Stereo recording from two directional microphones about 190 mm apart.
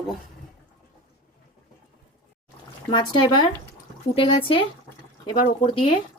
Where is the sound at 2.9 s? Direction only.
25° left (ahead or behind).